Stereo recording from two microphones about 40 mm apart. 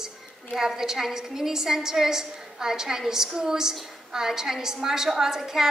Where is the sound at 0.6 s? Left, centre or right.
Centre.